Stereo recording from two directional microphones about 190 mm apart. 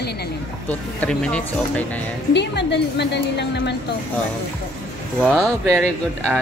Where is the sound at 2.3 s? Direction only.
65° left (ahead or behind).